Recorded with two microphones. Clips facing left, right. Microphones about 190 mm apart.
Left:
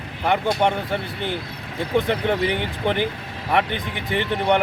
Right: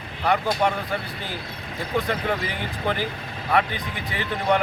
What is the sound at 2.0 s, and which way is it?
Speech, 25° left (ahead or behind).